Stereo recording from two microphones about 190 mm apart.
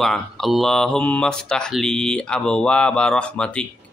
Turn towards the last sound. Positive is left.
turn(degrees=5)  # may be behind; listen again after turning